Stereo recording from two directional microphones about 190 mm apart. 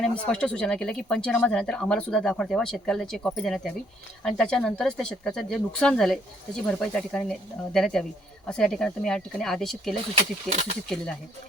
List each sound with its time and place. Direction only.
0.0 s speech: 5° left (ahead or behind)
10.2 s speech: 35° right (ahead or behind)